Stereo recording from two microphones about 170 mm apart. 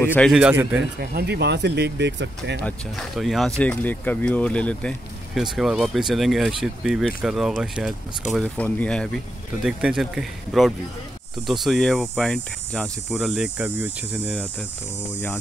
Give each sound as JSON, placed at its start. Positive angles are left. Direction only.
{"t": 0.0, "sound": "a man's voice", "side_deg": 10}
{"t": 0.3, "sound": "a man's voice", "side_deg": -5}
{"t": 0.9, "sound": "speech", "side_deg": -75}
{"t": 2.6, "sound": "speech", "side_deg": 0}